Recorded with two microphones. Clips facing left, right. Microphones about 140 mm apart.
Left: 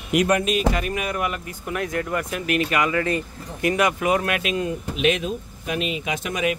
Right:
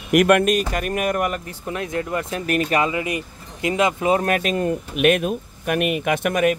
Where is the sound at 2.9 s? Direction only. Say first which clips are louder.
Left 2 dB; 15° right (ahead or behind); by 6.6 s 50° right (ahead or behind).